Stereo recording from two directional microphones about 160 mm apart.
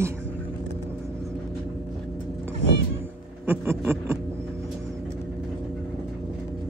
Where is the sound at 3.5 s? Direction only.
10° right (ahead or behind).